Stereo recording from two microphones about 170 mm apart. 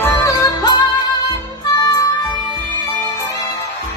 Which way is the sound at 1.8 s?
20° left (ahead or behind).